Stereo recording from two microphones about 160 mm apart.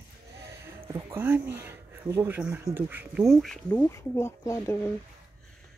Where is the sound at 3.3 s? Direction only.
Centre (ahead or behind).